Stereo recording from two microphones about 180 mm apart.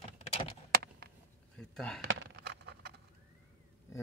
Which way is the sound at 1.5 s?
5° left (ahead or behind).